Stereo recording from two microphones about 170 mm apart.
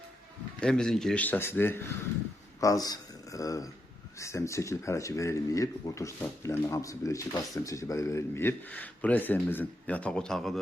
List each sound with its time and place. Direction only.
0.6 s speech: 5° left (ahead or behind)